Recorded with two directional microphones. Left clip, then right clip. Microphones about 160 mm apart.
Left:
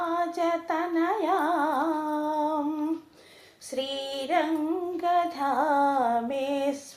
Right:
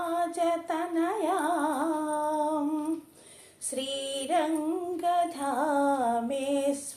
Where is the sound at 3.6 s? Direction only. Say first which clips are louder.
Left 2 dB; 40° right (ahead or behind).